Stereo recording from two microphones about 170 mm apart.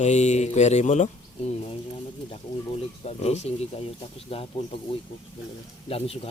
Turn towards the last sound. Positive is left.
turn(degrees=35)  # may be behind; listen again after turning